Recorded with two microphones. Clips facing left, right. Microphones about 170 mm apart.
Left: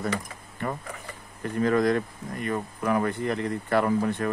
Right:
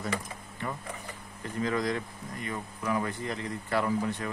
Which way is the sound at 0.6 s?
55° left (ahead or behind).